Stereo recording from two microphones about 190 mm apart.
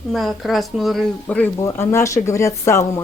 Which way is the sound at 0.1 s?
Centre (ahead or behind).